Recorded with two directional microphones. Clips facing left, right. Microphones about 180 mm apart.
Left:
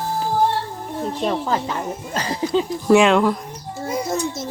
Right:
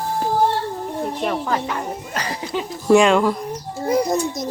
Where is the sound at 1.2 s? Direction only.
25° left (ahead or behind).